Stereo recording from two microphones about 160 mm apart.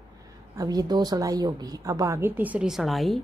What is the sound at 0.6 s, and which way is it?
A woman's voice, 25° right (ahead or behind).